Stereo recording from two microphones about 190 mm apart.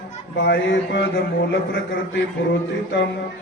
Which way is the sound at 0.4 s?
70° left (ahead or behind).